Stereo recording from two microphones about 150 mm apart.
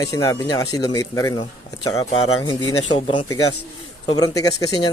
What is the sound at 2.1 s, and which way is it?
Speech, 40° left (ahead or behind).